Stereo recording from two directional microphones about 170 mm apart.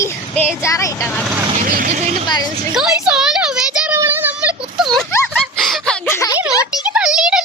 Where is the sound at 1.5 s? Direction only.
50° right (ahead or behind).